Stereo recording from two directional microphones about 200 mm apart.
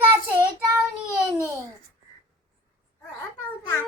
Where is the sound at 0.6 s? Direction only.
Centre (ahead or behind).